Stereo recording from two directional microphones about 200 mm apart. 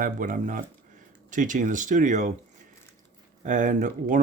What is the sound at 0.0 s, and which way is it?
Speech, 40° right (ahead or behind).